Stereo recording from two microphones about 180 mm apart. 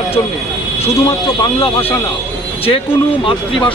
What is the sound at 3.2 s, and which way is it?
Speech, 30° left (ahead or behind).